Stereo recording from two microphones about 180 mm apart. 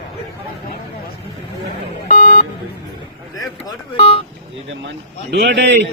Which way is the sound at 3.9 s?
30° left (ahead or behind).